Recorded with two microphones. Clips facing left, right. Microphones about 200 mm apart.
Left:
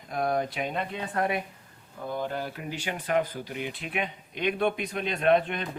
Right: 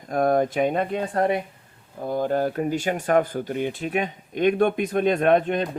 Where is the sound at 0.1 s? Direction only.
50° right (ahead or behind).